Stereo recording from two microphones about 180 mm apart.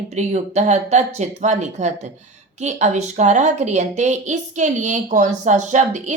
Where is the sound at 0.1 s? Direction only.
40° right (ahead or behind).